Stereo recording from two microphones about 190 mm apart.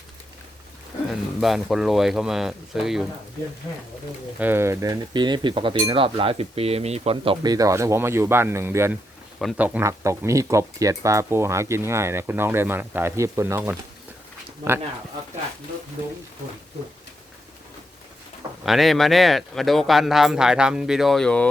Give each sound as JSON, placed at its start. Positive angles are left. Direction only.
{"t": 1.4, "sound": "speech", "side_deg": 0}
{"t": 4.4, "sound": "speech", "side_deg": -10}
{"t": 18.6, "sound": "speech", "side_deg": 0}